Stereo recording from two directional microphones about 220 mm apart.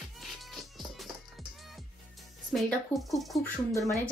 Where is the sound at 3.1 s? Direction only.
Centre (ahead or behind).